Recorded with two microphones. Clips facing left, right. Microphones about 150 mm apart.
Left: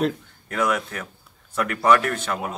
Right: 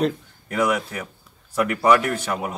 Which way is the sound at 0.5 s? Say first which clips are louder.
Right 2 dB; 10° right (ahead or behind).